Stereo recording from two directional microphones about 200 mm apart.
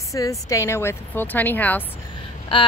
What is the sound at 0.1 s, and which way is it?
Speech, 15° left (ahead or behind).